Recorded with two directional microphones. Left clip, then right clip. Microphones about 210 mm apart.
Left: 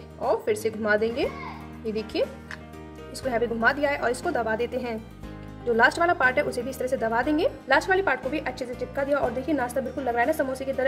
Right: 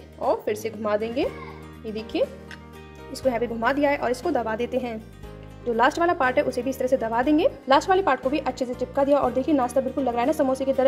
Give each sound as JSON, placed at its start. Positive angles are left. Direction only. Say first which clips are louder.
{"t": 0.2, "sound": "speech", "louder": "even", "side_deg": -15}
{"t": 3.3, "sound": "a woman's voice", "louder": "even", "side_deg": -25}
{"t": 5.8, "sound": "a woman's voice", "louder": "even", "side_deg": -15}